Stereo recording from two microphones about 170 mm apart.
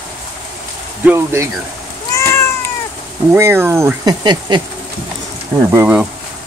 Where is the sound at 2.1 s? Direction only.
15° left (ahead or behind).